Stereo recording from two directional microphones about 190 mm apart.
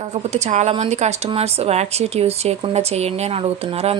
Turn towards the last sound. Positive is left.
turn(degrees=-30)  # may be behind; listen again after turning